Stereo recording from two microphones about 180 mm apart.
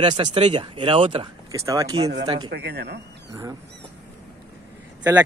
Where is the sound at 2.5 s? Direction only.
65° right (ahead or behind).